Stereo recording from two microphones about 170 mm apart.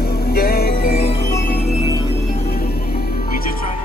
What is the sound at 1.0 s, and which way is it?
Music, 35° left (ahead or behind).